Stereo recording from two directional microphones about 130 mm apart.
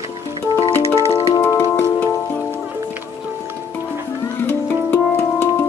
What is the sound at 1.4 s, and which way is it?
Music, 15° left (ahead or behind).